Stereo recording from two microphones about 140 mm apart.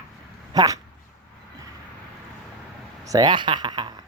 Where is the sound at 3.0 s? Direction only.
30° right (ahead or behind).